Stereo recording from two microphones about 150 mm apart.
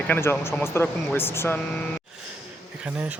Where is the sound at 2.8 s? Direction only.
10° right (ahead or behind).